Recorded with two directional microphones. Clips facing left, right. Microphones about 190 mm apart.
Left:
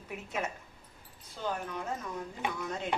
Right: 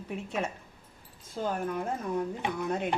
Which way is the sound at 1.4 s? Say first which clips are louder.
Right 5 dB; 50° right (ahead or behind).